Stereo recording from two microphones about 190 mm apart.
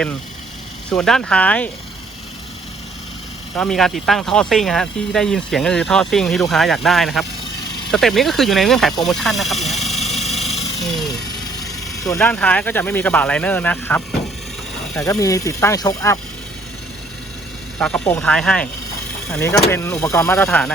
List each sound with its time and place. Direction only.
0.9 s speech: 5° left (ahead or behind)
3.7 s speech: centre (ahead or behind)
9.7 s vehicle: centre (ahead or behind)
10.2 s a sound: 35° left (ahead or behind)
10.8 s a sound: centre (ahead or behind)
11.6 s vehicle: 20° left (ahead or behind)
12.2 s speech: 5° left (ahead or behind)
15.0 s speech: 15° left (ahead or behind)
17.7 s speech: 5° left (ahead or behind)